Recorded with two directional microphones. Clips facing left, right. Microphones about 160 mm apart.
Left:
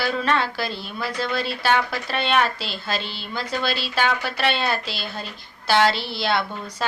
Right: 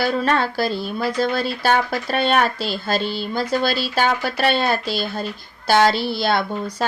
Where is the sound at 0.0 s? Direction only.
45° right (ahead or behind).